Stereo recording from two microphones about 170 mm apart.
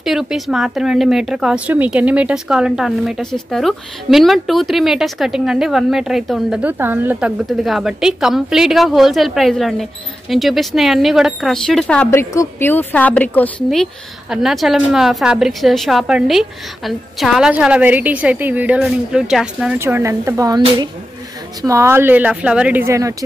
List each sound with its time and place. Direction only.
0.0 s speech: centre (ahead or behind)
14.3 s speech: centre (ahead or behind)
19.8 s speech: 15° right (ahead or behind)